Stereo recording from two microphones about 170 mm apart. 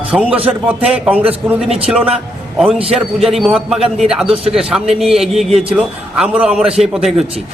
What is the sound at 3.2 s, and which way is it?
A man's voice, centre (ahead or behind).